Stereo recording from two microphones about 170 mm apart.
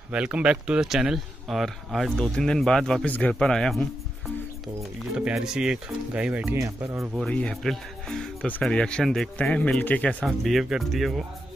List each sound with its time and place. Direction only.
0.1 s speech: 5° right (ahead or behind)
5.1 s speech: 5° right (ahead or behind)
7.2 s speech: 5° left (ahead or behind)